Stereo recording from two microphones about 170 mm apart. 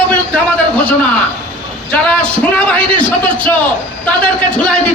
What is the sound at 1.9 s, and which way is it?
A man's voice, 5° left (ahead or behind).